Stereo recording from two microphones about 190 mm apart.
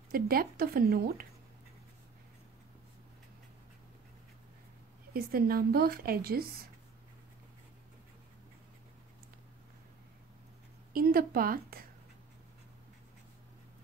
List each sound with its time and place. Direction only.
0.1 s a woman's voice: 50° right (ahead or behind)
5.1 s a woman's voice: 50° right (ahead or behind)
10.9 s a woman's voice: 50° right (ahead or behind)